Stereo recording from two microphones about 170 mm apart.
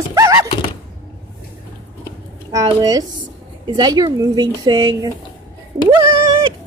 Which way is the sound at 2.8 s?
20° right (ahead or behind).